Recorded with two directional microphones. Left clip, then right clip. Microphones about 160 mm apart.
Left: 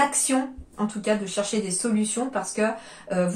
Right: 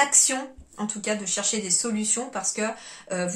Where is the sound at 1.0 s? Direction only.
20° right (ahead or behind).